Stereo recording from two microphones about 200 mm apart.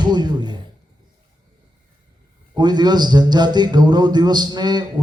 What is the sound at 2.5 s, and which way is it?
A man's voice, 20° right (ahead or behind).